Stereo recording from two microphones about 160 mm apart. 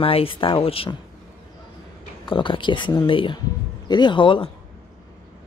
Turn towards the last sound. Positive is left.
turn(degrees=30)  # may be behind; listen again after turning